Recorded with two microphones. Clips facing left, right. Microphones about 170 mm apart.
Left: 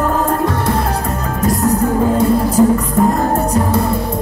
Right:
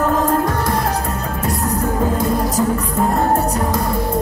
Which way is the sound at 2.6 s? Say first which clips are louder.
Left 9 dB; 20° left (ahead or behind).